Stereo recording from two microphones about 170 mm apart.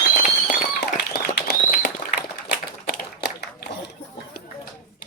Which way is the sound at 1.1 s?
70° left (ahead or behind).